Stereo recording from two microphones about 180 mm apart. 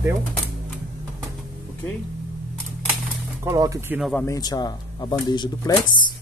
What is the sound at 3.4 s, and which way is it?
Speech, 15° right (ahead or behind).